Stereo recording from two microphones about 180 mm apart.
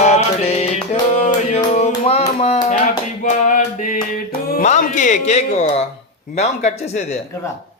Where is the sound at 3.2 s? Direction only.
45° left (ahead or behind).